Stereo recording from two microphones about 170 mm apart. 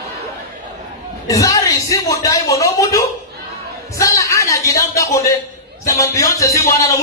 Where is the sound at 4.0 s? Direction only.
20° left (ahead or behind).